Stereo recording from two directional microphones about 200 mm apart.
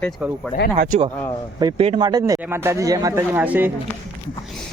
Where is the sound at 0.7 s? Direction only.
40° right (ahead or behind).